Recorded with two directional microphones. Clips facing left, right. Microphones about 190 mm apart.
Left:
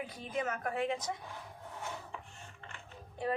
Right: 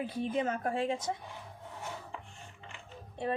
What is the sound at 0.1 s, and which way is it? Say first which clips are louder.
Speech: right 5 dB; 30° right (ahead or behind).